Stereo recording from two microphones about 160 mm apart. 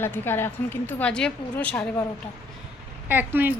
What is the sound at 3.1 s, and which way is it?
Speech, 10° right (ahead or behind).